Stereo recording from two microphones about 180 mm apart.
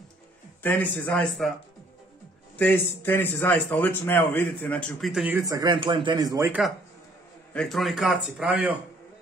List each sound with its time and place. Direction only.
0.6 s a man's voice: 10° left (ahead or behind)
2.6 s a man's voice: 10° left (ahead or behind)
5.3 s speech: 20° right (ahead or behind)
7.5 s a man's voice: centre (ahead or behind)